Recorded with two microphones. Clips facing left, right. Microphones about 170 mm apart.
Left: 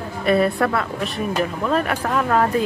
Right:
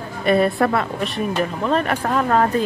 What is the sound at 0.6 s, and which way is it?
Speech, 20° right (ahead or behind).